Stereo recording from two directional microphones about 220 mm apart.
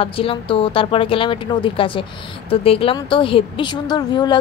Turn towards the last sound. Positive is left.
turn(degrees=20)  # may be behind; listen again after turning